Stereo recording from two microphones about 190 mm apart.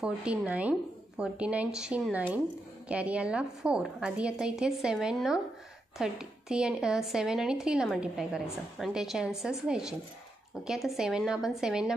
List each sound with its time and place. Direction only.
0.0 s a woman's voice: 5° right (ahead or behind)